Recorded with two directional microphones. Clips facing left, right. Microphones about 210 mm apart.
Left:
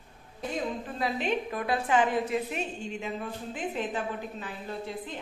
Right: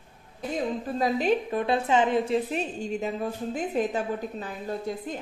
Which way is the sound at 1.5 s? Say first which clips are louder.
Right 3 dB; 25° right (ahead or behind).